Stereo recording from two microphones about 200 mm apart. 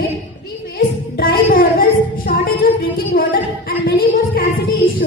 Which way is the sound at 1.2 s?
45° left (ahead or behind).